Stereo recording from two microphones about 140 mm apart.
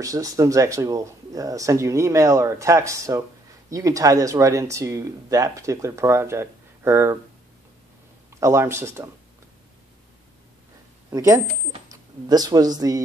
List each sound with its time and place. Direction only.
0.0 s speech: 25° right (ahead or behind)
8.4 s speech: 20° right (ahead or behind)
11.1 s speech: 20° right (ahead or behind)